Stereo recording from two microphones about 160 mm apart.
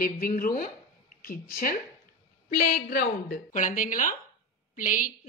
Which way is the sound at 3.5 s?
55° left (ahead or behind).